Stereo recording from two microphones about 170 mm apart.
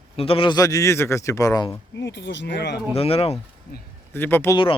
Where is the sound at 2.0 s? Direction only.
90° left.